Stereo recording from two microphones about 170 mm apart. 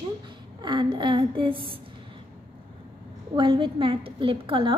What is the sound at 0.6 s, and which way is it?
A woman's voice, 25° right (ahead or behind).